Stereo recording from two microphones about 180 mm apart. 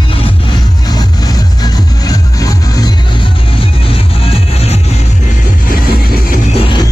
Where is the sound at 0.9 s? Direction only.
20° left (ahead or behind).